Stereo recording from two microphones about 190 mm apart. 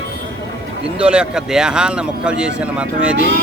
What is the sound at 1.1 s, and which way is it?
Speech, 5° right (ahead or behind).